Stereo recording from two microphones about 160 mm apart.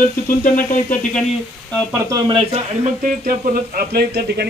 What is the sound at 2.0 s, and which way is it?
Speech, 25° right (ahead or behind).